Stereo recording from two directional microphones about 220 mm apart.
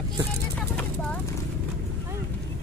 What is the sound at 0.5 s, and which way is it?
Speech, 5° left (ahead or behind).